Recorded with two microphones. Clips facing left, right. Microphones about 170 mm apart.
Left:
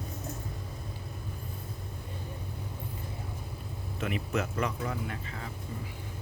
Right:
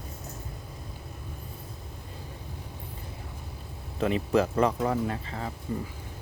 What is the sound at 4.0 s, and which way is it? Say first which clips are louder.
Speech: right 8 dB; 30° right (ahead or behind).